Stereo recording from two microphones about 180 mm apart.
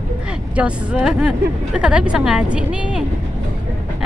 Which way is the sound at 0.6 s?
5° right (ahead or behind).